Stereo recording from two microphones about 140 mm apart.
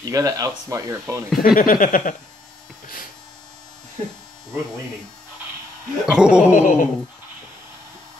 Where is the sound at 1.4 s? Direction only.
85° left.